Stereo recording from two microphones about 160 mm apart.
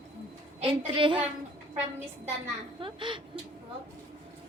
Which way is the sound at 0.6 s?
30° right (ahead or behind).